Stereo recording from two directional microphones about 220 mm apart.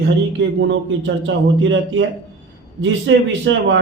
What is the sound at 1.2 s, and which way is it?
A man's voice, 60° right (ahead or behind).